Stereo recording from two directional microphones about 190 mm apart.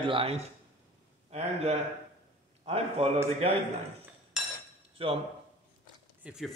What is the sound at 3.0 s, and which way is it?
Speech, 30° right (ahead or behind).